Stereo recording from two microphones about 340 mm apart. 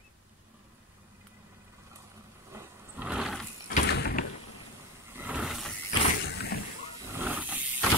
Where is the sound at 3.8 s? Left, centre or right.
Left.